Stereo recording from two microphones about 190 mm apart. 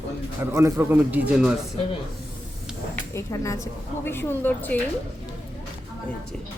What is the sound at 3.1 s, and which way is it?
Speech, 15° left (ahead or behind).